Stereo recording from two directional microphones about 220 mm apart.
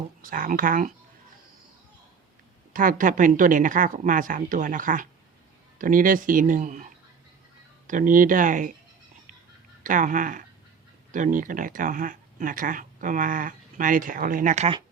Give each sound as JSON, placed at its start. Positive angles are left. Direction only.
{"t": 0.2, "sound": "speech", "side_deg": -40}
{"t": 2.7, "sound": "speech", "side_deg": -40}
{"t": 9.8, "sound": "speech", "side_deg": -35}